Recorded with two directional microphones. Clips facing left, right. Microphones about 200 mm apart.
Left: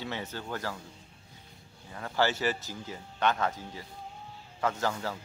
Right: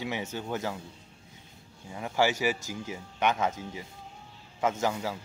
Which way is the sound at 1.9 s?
15° right (ahead or behind).